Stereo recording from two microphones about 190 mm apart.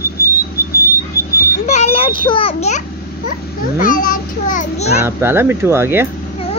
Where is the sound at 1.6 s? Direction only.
35° left (ahead or behind).